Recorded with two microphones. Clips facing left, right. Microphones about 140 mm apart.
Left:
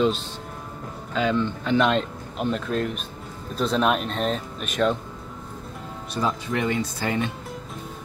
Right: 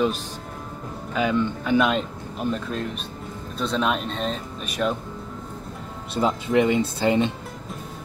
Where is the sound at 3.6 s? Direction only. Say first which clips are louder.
Left 2 dB; centre (ahead or behind).